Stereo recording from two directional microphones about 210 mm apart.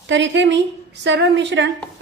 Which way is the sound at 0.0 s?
60° right (ahead or behind).